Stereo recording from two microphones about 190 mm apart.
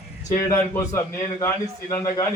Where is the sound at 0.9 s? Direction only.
15° left (ahead or behind).